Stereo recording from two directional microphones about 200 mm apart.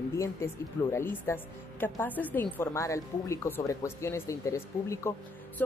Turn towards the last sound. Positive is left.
turn(degrees=15)  # may be behind; listen again after turning